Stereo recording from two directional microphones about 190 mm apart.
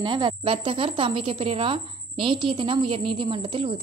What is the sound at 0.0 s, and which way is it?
Speech, 25° right (ahead or behind).